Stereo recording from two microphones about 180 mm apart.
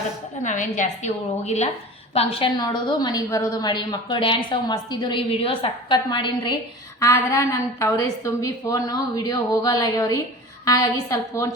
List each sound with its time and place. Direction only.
0.4 s a woman's voice: 45° left (ahead or behind); by 11.4 s 20° left (ahead or behind)